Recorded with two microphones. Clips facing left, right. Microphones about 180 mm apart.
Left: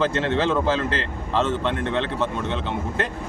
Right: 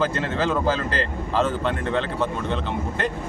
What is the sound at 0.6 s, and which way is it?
Speech, 40° right (ahead or behind).